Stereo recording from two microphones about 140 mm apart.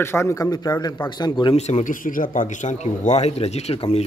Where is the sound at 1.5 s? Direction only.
50° left (ahead or behind).